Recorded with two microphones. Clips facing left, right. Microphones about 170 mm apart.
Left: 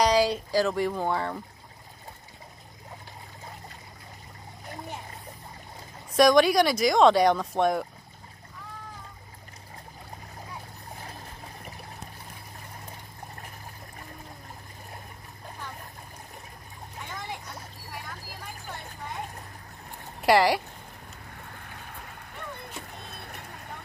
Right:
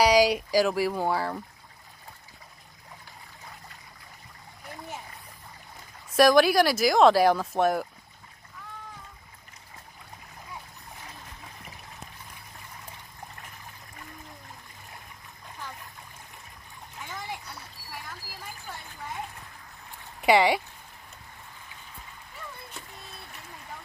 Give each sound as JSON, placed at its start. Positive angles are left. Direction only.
{"t": 0.0, "sound": "speech", "side_deg": -10}
{"t": 6.1, "sound": "speech", "side_deg": 0}
{"t": 11.0, "sound": "a sound", "side_deg": 40}
{"t": 20.2, "sound": "speech", "side_deg": 0}
{"t": 21.5, "sound": "splash", "side_deg": 65}